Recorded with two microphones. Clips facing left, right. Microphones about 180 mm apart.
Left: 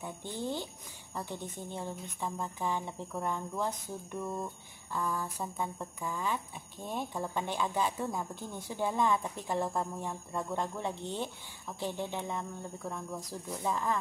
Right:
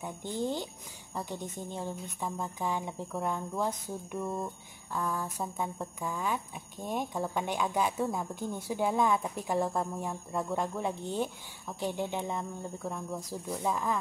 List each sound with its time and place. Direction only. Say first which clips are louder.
0.0 s speech: right 4 dB; 15° right (ahead or behind)
4.9 s speech: right 1 dB; 10° right (ahead or behind)